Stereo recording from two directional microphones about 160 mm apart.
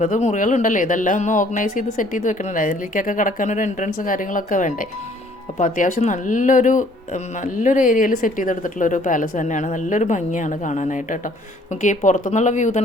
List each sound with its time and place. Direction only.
0.0 s speech: 50° left (ahead or behind)